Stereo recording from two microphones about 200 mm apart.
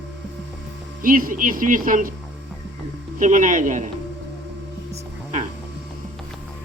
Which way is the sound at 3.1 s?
40° right (ahead or behind).